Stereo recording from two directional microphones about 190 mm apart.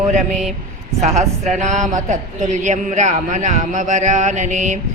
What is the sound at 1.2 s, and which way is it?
A woman's voice, 35° right (ahead or behind).